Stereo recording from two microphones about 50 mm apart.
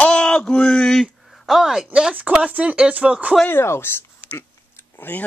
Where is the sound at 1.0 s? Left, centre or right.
Centre.